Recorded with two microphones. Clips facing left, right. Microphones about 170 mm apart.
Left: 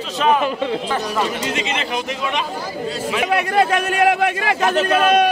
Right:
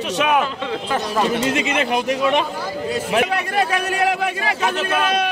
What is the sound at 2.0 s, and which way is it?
Speech, 50° right (ahead or behind).